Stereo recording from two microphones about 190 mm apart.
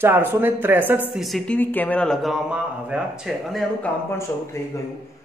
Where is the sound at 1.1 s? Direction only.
Centre (ahead or behind).